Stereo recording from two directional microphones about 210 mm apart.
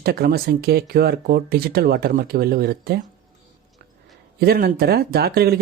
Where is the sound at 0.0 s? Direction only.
45° right (ahead or behind).